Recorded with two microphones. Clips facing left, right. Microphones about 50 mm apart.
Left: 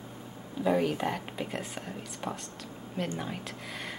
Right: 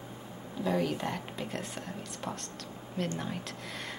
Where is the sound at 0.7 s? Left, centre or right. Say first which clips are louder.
Left 3 dB; centre.